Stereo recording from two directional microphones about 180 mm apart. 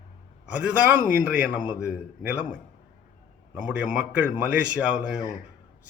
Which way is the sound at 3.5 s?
5° right (ahead or behind).